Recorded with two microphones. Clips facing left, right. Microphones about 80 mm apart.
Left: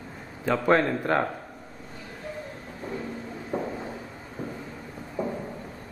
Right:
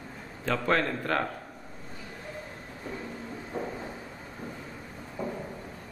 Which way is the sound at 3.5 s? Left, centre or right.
Left.